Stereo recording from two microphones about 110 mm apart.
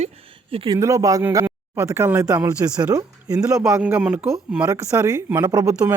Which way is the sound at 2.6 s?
30° right (ahead or behind).